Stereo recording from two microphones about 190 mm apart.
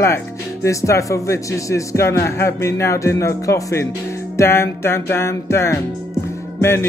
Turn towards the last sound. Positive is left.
turn(degrees=15)  # may be behind; listen again after turning